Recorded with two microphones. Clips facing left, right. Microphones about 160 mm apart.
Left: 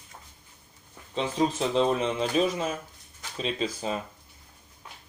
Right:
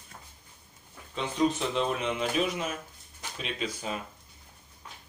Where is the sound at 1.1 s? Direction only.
30° left (ahead or behind).